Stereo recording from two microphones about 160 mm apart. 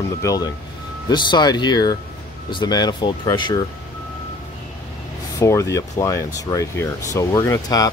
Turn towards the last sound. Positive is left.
turn(degrees=20)  # may be behind; listen again after turning